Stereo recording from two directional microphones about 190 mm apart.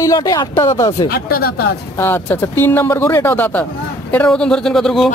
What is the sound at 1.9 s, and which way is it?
A man's voice, 10° left (ahead or behind).